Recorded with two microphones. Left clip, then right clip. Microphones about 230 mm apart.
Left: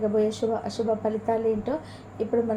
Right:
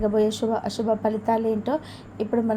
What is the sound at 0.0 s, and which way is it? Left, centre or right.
A woman's voice, right.